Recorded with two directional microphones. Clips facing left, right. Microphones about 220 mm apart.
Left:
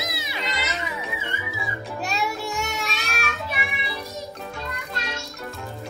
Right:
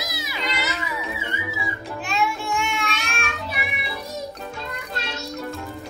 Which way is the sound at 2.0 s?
40° left (ahead or behind).